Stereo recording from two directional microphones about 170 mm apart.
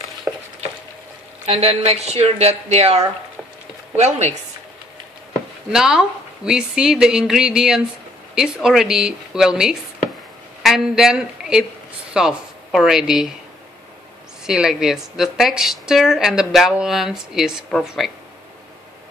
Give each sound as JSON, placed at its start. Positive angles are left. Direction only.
{"t": 0.3, "sound": "a sound", "side_deg": -10}
{"t": 1.4, "sound": "speech", "side_deg": -35}
{"t": 5.7, "sound": "a woman's voice", "side_deg": -5}
{"t": 14.4, "sound": "speech", "side_deg": -5}